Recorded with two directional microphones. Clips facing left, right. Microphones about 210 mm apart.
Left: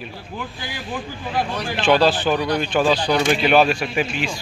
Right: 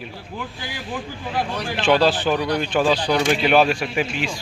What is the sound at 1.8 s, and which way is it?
Speech, 5° left (ahead or behind).